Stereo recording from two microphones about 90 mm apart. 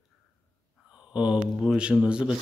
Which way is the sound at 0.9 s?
10° right (ahead or behind).